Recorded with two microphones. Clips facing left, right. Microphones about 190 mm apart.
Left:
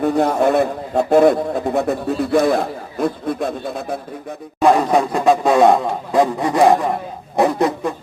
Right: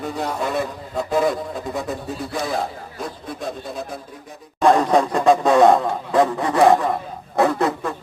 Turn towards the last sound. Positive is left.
turn(degrees=15)  # may be behind; listen again after turning